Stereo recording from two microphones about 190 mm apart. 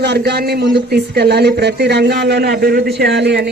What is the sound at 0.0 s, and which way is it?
A man's voice, 60° right (ahead or behind).